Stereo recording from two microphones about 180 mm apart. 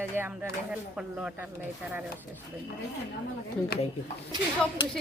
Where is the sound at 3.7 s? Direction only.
60° left (ahead or behind).